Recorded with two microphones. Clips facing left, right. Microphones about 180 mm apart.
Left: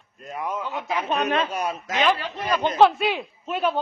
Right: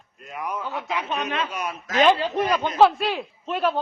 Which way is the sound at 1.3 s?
40° left (ahead or behind).